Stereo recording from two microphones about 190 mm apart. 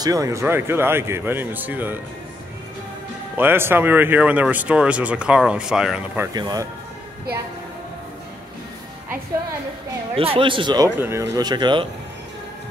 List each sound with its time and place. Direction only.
0.0 s speech: 20° right (ahead or behind)
3.3 s speech: 10° right (ahead or behind)
6.3 s speech: 20° right (ahead or behind)
10.1 s speech: 30° right (ahead or behind)
11.0 s speech: 15° right (ahead or behind)